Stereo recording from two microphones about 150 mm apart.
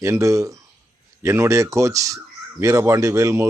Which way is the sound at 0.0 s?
20° right (ahead or behind).